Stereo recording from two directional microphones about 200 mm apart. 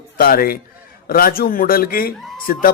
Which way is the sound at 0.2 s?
50° left (ahead or behind).